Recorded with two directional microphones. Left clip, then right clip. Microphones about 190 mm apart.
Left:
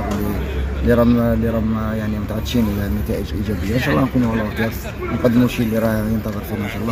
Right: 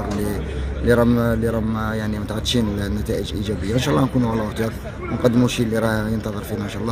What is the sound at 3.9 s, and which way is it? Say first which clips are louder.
Speech: left 2 dB; 15° right (ahead or behind).